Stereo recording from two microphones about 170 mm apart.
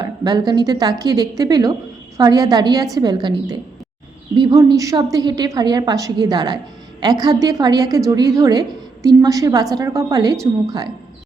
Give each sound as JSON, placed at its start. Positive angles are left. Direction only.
{"t": 0.0, "sound": "a woman's voice", "side_deg": -25}